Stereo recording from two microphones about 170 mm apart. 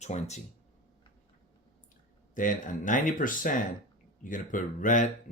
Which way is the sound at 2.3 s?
50° left (ahead or behind).